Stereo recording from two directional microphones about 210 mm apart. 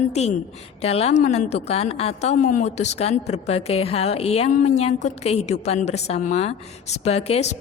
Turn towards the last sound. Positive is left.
turn(degrees=30)  # may be behind; listen again after turning